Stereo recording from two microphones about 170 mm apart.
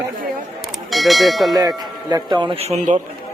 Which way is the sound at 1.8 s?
25° right (ahead or behind).